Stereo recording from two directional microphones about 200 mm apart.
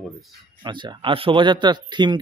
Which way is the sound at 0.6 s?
20° right (ahead or behind).